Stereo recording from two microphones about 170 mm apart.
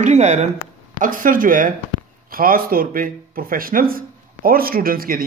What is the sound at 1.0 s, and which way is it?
Speech, 55° right (ahead or behind).